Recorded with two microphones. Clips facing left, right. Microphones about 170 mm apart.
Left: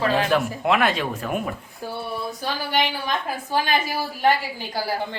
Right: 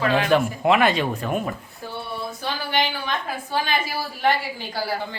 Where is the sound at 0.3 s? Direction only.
Centre (ahead or behind).